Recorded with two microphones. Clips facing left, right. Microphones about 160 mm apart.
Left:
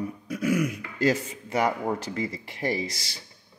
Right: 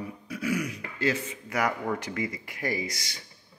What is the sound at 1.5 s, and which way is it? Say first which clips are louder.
Speech: left 3 dB; 25° left (ahead or behind).